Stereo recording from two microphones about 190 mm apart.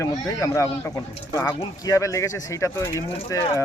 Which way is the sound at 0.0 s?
15° left (ahead or behind).